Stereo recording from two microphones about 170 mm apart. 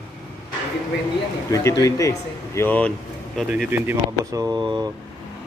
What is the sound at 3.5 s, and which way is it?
Speech, 10° right (ahead or behind).